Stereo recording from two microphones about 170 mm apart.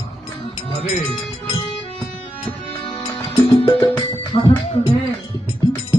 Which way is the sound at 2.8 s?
30° left (ahead or behind).